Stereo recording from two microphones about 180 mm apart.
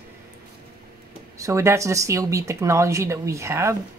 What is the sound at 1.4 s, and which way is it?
Speech, 15° right (ahead or behind).